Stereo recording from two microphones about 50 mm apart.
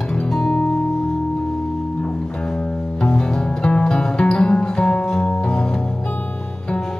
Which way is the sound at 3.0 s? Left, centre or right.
Centre.